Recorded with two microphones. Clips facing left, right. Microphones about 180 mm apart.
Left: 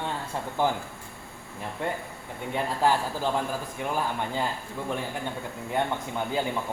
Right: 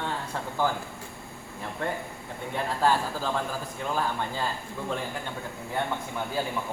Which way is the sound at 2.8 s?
15° left (ahead or behind).